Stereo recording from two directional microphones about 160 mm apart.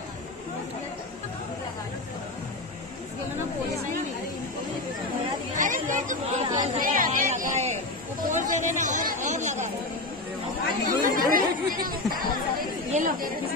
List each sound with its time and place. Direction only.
5.5 s chatter: 55° right (ahead or behind)
11.0 s chatter: 60° right (ahead or behind)
12.9 s speech: 60° right (ahead or behind)